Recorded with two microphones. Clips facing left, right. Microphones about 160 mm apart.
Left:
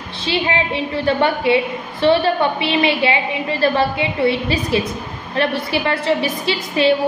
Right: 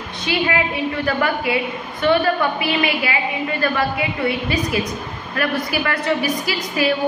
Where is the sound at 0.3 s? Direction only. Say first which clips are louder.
Left 1 dB; 25° left (ahead or behind).